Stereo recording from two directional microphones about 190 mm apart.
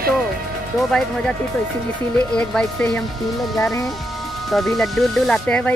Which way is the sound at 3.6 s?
15° left (ahead or behind).